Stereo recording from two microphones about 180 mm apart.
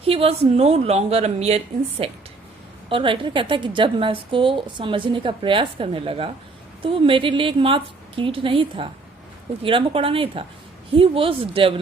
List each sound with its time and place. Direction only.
0.0 s a woman's voice: 35° right (ahead or behind)